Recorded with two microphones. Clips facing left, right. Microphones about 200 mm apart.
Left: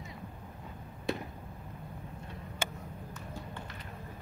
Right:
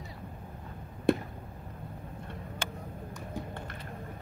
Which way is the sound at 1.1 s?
55° right (ahead or behind).